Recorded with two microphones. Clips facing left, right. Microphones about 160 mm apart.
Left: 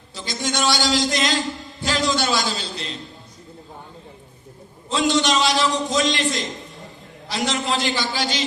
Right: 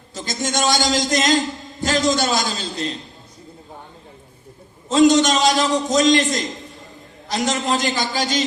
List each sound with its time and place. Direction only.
0.1 s a man's voice: 45° right (ahead or behind)
4.9 s a man's voice: 45° right (ahead or behind)